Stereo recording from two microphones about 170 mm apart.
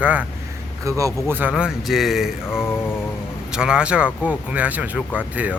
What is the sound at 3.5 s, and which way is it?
Speech, 5° right (ahead or behind).